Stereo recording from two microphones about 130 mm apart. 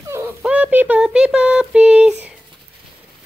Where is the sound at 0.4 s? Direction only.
10° right (ahead or behind).